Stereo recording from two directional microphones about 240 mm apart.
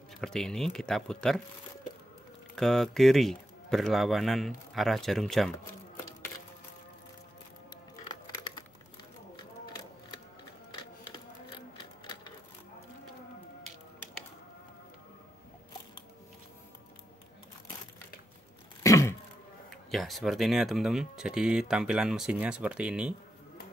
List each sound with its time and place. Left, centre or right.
0.2 s speech: centre
2.5 s speech: centre
8.0 s a sound: centre
18.8 s throat clearing: centre
19.7 s speech: centre